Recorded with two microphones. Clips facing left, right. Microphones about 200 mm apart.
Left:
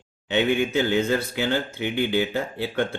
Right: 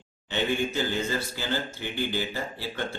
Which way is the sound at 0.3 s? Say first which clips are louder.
Left 6 dB; 60° left (ahead or behind).